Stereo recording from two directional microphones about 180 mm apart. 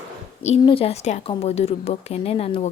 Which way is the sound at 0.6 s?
30° left (ahead or behind).